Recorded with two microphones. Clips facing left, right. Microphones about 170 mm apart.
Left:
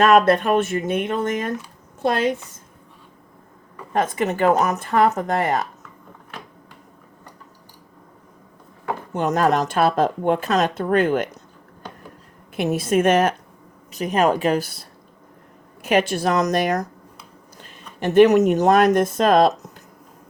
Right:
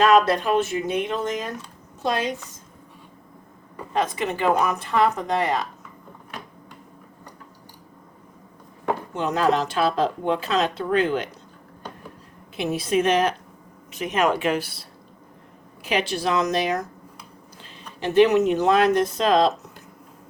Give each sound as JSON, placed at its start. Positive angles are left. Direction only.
{"t": 0.0, "sound": "speech", "side_deg": 55}
{"t": 3.9, "sound": "speech", "side_deg": 50}
{"t": 9.1, "sound": "speech", "side_deg": 45}
{"t": 12.5, "sound": "speech", "side_deg": 50}
{"t": 13.9, "sound": "speech", "side_deg": 40}